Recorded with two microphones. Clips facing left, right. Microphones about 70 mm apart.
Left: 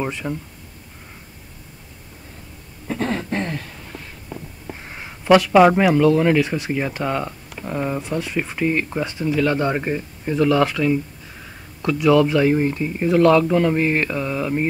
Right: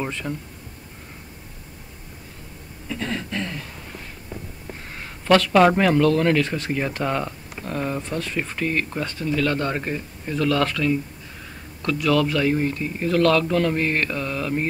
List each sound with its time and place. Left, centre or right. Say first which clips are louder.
0.0 s speech: left 3 dB; centre
2.9 s a sound: left 5 dB; left
4.8 s speech: left 3 dB; centre